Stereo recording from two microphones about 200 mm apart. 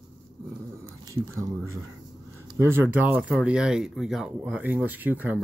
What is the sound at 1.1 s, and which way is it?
Speech, 15° right (ahead or behind).